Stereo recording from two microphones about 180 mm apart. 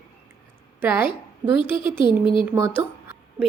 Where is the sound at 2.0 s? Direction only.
25° left (ahead or behind).